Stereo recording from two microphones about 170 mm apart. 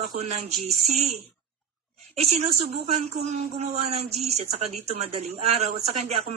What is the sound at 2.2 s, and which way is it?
Speech, 40° right (ahead or behind).